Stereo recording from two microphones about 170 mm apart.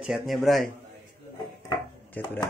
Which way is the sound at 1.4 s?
25° left (ahead or behind).